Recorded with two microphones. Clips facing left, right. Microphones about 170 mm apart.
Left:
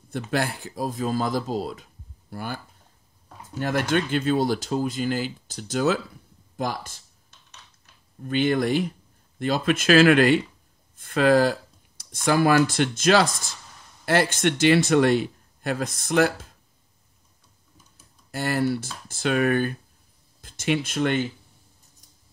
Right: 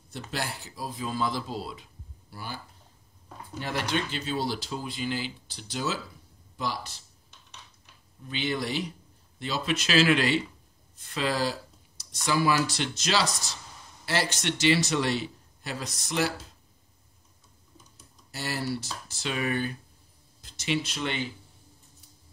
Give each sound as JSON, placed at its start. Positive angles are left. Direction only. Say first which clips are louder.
{"t": 0.1, "sound": "speech", "louder": "left 8 dB", "side_deg": 55}
{"t": 8.2, "sound": "speech", "louder": "left 9 dB", "side_deg": 50}
{"t": 18.3, "sound": "speech", "louder": "left 8 dB", "side_deg": 55}